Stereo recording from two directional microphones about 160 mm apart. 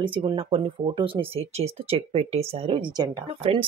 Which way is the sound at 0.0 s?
30° right (ahead or behind).